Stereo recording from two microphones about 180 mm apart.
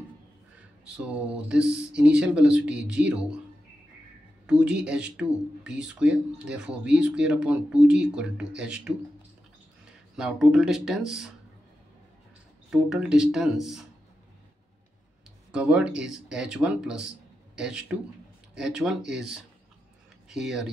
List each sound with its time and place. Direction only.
0.9 s speech: 5° right (ahead or behind)
4.5 s speech: 5° right (ahead or behind)
10.1 s speech: centre (ahead or behind)
12.9 s speech: 5° right (ahead or behind)
15.5 s speech: 5° right (ahead or behind)